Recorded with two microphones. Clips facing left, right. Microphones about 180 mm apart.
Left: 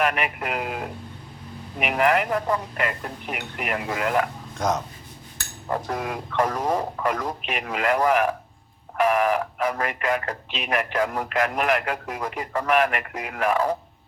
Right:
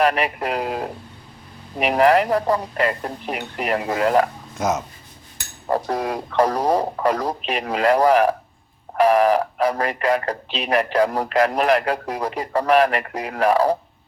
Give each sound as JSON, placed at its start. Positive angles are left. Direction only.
{"t": 0.0, "sound": "speech", "side_deg": -35}
{"t": 4.5, "sound": "speech", "side_deg": -5}
{"t": 5.6, "sound": "speech", "side_deg": -35}